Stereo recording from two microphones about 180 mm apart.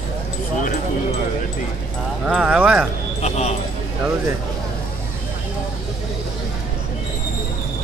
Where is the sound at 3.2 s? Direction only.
35° left (ahead or behind).